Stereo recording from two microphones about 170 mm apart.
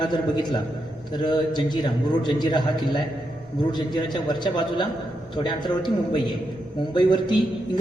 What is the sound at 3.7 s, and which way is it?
A man's voice, 25° left (ahead or behind).